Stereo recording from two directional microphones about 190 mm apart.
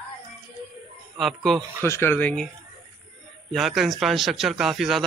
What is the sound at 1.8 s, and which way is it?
Speech, 10° left (ahead or behind).